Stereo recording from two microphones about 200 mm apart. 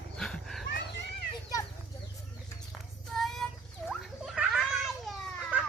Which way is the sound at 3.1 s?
Centre (ahead or behind).